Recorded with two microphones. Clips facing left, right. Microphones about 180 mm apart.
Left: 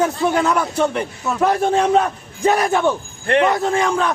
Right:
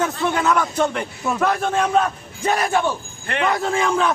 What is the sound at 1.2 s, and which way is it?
Speech, 15° right (ahead or behind).